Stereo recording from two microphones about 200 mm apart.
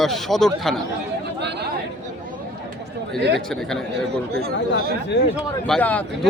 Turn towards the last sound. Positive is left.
turn(degrees=5)  # may be behind; listen again after turning